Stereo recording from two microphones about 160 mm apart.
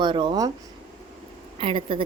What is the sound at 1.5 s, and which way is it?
Speech, 35° right (ahead or behind).